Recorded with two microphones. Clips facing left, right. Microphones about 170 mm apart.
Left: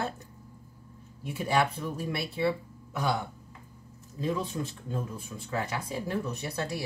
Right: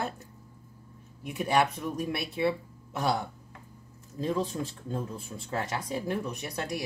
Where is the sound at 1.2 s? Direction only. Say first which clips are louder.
Right 1 dB; 20° right (ahead or behind).